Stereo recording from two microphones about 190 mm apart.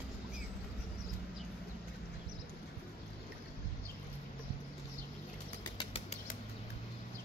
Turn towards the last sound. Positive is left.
turn(degrees=30)  # may be behind; listen again after turning